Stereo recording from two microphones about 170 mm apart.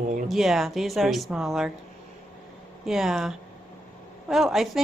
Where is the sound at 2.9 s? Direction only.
Centre (ahead or behind).